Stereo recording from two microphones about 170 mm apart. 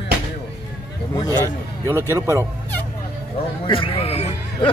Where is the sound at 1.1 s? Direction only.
20° left (ahead or behind).